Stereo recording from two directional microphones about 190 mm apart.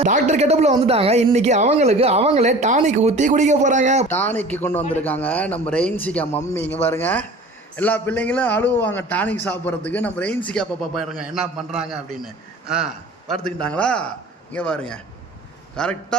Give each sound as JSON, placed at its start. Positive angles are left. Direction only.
{"t": 0.0, "sound": "speech", "side_deg": -35}
{"t": 4.1, "sound": "a man's voice", "side_deg": 10}